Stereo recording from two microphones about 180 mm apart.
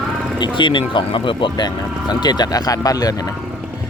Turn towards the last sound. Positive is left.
turn(degrees=20)  # may be behind; listen again after turning